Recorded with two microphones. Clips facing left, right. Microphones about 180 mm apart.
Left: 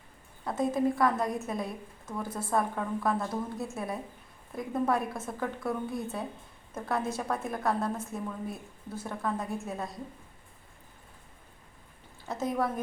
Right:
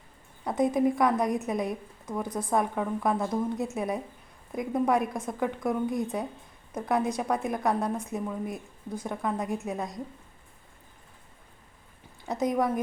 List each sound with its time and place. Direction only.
0.4 s a woman's voice: 15° right (ahead or behind)
12.3 s a woman's voice: 15° right (ahead or behind)